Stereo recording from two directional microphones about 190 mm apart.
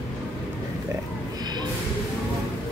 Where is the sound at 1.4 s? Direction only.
20° right (ahead or behind).